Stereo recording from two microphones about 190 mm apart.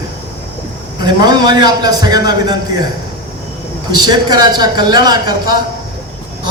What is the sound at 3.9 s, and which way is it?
A man's voice, 20° right (ahead or behind).